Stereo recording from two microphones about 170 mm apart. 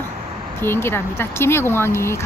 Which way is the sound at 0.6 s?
15° left (ahead or behind).